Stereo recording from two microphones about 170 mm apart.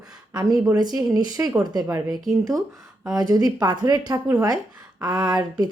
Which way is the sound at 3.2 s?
20° right (ahead or behind).